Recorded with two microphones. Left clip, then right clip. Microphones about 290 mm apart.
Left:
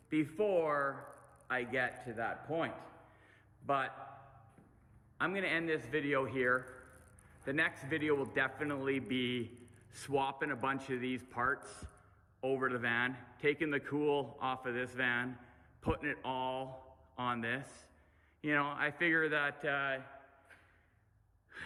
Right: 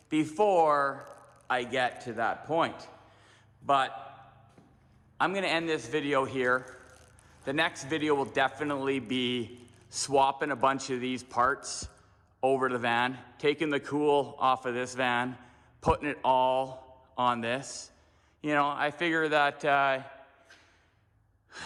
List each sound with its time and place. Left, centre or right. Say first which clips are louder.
0.1 s a man's voice: right 8 dB; centre
3.2 s a sound: right 9 dB; centre
5.1 s a man's voice: right 7 dB; centre